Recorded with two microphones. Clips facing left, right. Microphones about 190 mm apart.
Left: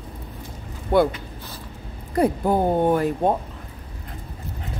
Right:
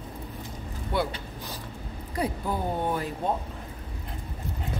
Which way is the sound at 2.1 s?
50° left (ahead or behind).